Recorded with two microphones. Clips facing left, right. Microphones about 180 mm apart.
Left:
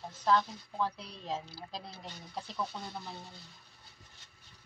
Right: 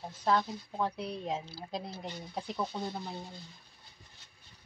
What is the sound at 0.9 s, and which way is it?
Speech, 60° right (ahead or behind).